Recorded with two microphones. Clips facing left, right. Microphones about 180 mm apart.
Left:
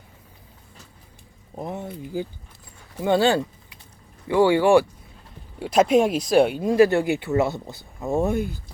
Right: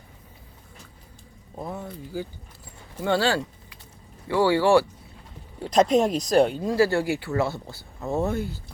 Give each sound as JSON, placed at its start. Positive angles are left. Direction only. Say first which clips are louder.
{"t": 1.5, "sound": "speech", "louder": "left 3 dB", "side_deg": 20}